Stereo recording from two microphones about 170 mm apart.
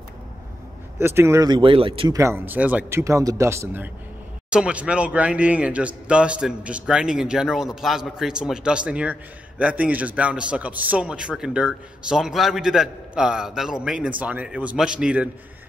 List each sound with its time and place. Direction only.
0.9 s speech: 15° right (ahead or behind); by 2.1 s 30° right (ahead or behind)
2.1 s a man's voice: 15° right (ahead or behind)